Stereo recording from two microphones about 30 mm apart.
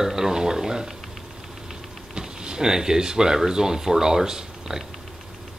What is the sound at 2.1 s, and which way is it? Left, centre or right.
Speech, right.